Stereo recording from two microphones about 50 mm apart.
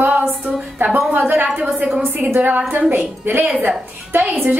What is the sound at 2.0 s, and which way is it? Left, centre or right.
A woman's voice, right.